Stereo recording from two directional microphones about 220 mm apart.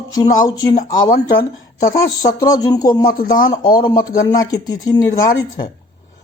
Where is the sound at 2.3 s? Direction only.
15° left (ahead or behind).